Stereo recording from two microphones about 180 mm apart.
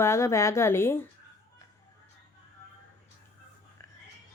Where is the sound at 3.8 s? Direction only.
15° left (ahead or behind).